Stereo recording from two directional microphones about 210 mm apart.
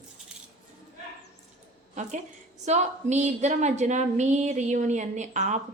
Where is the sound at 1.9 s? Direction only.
35° right (ahead or behind).